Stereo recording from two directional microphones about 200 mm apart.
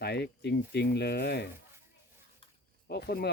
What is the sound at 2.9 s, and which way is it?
Speech, 55° left (ahead or behind).